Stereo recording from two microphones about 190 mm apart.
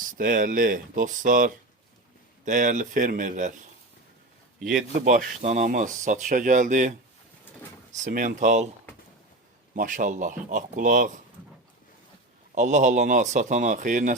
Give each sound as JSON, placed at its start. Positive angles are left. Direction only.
{"t": 0.0, "sound": "speech", "side_deg": -45}
{"t": 4.9, "sound": "speech", "side_deg": -40}
{"t": 7.9, "sound": "speech", "side_deg": -40}
{"t": 9.7, "sound": "speech", "side_deg": -45}
{"t": 12.5, "sound": "speech", "side_deg": -40}